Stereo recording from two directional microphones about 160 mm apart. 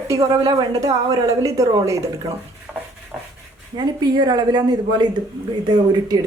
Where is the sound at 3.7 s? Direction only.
25° right (ahead or behind).